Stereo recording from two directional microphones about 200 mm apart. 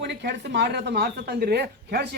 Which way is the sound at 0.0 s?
55° right (ahead or behind).